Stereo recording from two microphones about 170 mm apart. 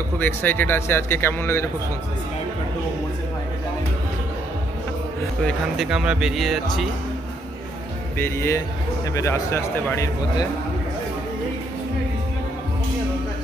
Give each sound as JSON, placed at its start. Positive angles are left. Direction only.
{"t": 0.2, "sound": "a man's voice", "side_deg": 10}
{"t": 5.4, "sound": "speech", "side_deg": 0}
{"t": 8.2, "sound": "a man's voice", "side_deg": 15}